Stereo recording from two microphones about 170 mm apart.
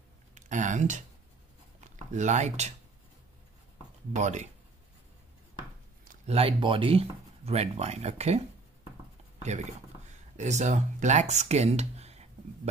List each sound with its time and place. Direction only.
0.3 s speech: 45° right (ahead or behind)
4.1 s speech: 45° right (ahead or behind)
6.2 s speech: 35° right (ahead or behind)
9.4 s speech: 45° right (ahead or behind)